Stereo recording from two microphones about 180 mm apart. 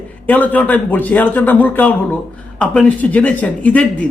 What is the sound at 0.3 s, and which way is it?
A man's voice, 10° left (ahead or behind).